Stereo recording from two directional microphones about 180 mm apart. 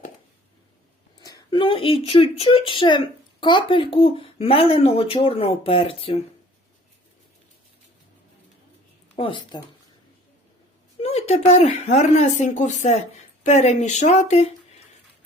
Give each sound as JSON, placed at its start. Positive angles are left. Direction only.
{"t": 1.2, "sound": "speech", "side_deg": 25}
{"t": 9.1, "sound": "speech", "side_deg": 30}
{"t": 11.0, "sound": "speech", "side_deg": 35}